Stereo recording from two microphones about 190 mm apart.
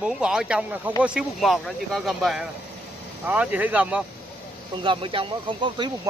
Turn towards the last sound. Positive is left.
turn(degrees=-25)  # may be behind; listen again after turning